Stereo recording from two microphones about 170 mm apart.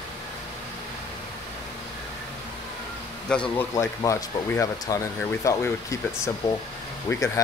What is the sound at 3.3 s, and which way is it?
Speech, 5° left (ahead or behind).